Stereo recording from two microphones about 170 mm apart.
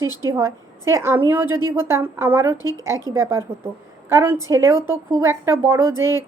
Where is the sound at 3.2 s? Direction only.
15° right (ahead or behind).